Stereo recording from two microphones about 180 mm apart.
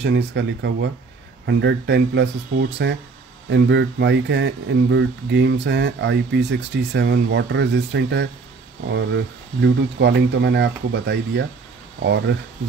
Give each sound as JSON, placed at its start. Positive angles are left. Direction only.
{"t": 0.0, "sound": "speech", "side_deg": -85}